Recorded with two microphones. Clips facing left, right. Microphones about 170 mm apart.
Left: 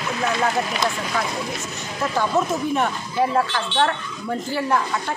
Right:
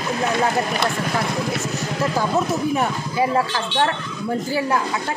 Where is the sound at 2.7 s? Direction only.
5° right (ahead or behind).